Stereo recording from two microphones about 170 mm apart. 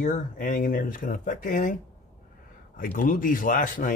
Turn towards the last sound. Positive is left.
turn(degrees=50)  # may be behind; listen again after turning